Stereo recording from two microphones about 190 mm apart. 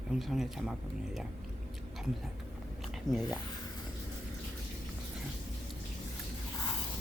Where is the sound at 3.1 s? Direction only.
20° left (ahead or behind).